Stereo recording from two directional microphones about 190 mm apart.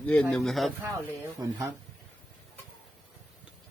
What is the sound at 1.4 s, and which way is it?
Speech, 20° right (ahead or behind).